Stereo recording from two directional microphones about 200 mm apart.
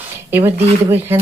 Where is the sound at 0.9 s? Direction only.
10° right (ahead or behind).